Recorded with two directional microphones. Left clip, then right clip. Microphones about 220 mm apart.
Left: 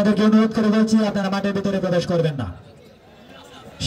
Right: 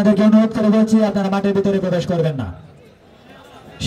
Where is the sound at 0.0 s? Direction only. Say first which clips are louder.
Right 3 dB; 20° right (ahead or behind).